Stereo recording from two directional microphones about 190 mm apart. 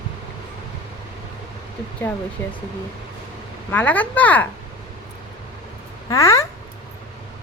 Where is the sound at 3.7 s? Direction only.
10° left (ahead or behind).